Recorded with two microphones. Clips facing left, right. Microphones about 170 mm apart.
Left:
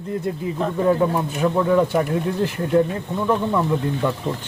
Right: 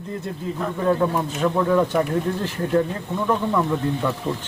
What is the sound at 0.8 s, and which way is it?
Speech, 10° left (ahead or behind).